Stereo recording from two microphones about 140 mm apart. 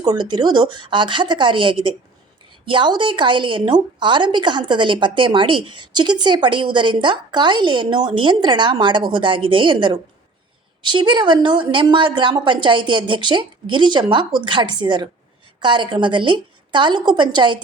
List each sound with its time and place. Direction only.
0.0 s a woman's voice: 30° right (ahead or behind)